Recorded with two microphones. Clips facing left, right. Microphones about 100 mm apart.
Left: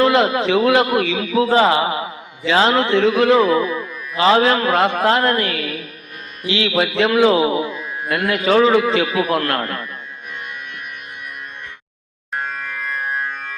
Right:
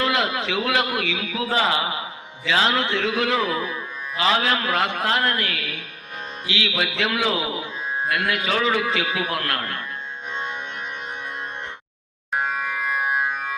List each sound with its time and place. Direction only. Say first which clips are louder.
0.0 s a man's voice: left 8 dB; 35° left (ahead or behind)
12.3 s music: right 1 dB; 10° right (ahead or behind)